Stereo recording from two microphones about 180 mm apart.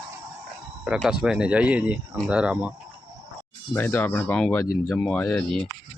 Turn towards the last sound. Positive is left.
turn(degrees=10)  # may be behind; listen again after turning